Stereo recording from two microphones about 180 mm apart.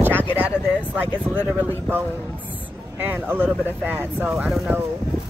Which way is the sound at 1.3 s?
10° right (ahead or behind).